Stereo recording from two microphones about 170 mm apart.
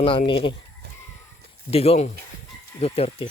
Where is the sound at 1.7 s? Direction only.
35° left (ahead or behind).